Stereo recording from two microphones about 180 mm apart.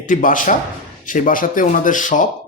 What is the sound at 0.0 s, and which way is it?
Speech, 45° left (ahead or behind).